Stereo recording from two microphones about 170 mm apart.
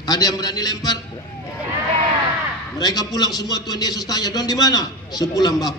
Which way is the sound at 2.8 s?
20° left (ahead or behind).